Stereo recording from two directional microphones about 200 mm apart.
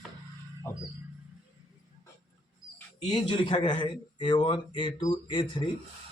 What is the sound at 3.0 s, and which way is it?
Speech, 25° left (ahead or behind).